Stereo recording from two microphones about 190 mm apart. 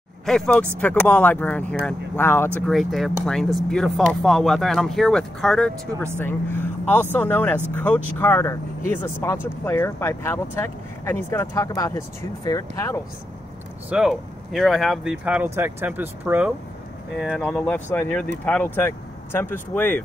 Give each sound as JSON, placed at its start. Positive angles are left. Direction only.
{"t": 0.2, "sound": "speech", "side_deg": 5}
{"t": 13.8, "sound": "speech", "side_deg": -5}
{"t": 17.4, "sound": "speech", "side_deg": 10}